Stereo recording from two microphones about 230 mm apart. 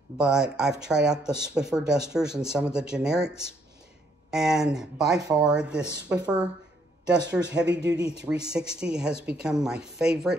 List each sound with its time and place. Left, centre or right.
0.2 s speech: centre
7.6 s speech: right
7.9 s speech: centre